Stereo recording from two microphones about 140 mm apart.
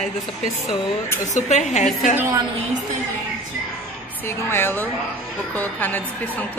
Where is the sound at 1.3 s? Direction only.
60° left (ahead or behind).